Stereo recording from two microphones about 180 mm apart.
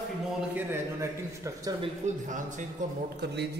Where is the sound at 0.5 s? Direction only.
15° right (ahead or behind).